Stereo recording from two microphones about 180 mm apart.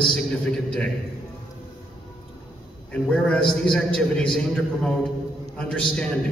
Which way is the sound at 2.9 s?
5° left (ahead or behind).